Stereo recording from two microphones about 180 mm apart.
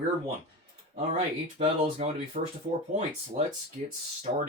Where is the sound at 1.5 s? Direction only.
30° right (ahead or behind).